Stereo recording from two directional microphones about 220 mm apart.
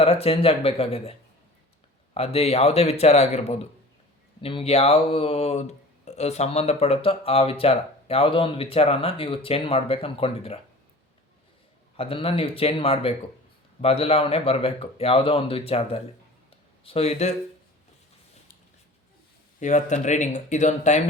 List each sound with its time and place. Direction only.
0.0 s speech: 25° left (ahead or behind)
2.1 s speech: 25° left (ahead or behind)
11.9 s speech: 25° left (ahead or behind)
19.5 s speech: 35° left (ahead or behind)